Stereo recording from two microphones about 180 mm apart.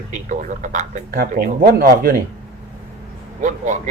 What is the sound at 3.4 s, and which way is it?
Speech, 40° right (ahead or behind).